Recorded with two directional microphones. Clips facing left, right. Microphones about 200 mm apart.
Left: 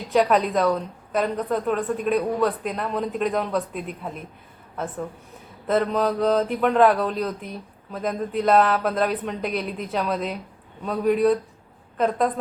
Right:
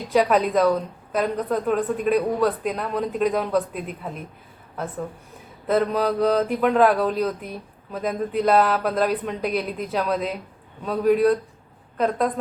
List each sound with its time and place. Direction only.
0.1 s a woman's voice: centre (ahead or behind)
5.6 s a woman's voice: centre (ahead or behind)